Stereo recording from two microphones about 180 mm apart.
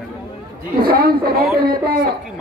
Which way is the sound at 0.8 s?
60° right (ahead or behind).